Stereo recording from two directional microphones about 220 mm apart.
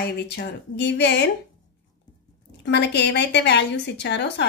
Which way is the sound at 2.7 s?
50° left (ahead or behind).